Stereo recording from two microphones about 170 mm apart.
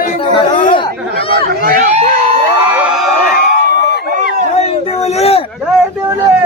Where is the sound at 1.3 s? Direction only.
65° right (ahead or behind); by 2.1 s 45° right (ahead or behind).